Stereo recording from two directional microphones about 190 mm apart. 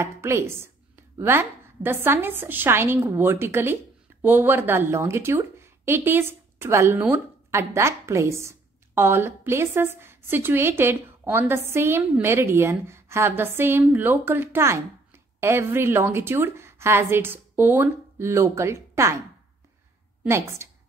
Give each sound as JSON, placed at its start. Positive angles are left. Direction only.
{"t": 0.0, "sound": "a woman's voice", "side_deg": -15}
{"t": 20.2, "sound": "a woman's voice", "side_deg": -15}